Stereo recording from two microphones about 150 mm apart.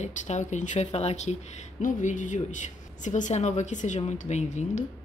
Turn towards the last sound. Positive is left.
turn(degrees=50)  # may be behind; listen again after turning